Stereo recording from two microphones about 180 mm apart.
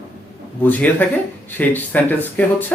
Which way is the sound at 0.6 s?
10° left (ahead or behind).